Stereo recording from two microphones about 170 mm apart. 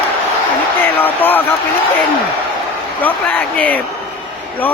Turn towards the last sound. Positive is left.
turn(degrees=10)  # may be behind; listen again after turning